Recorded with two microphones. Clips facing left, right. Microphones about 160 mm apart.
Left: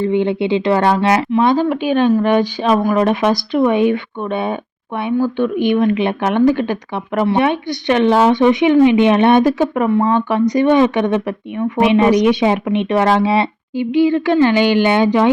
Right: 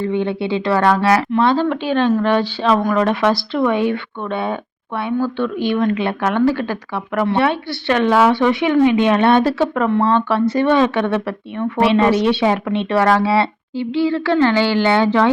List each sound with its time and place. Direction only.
0.0 s speech: 20° left (ahead or behind)